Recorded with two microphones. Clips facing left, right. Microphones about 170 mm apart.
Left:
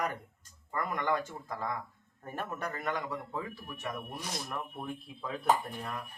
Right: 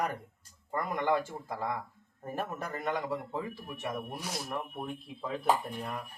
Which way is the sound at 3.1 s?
30° right (ahead or behind).